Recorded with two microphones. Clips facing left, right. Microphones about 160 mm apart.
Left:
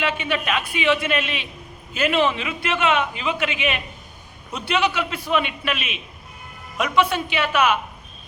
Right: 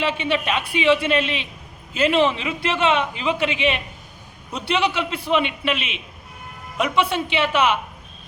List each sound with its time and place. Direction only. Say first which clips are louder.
0.0 s a man's voice: right 2 dB; 30° right (ahead or behind)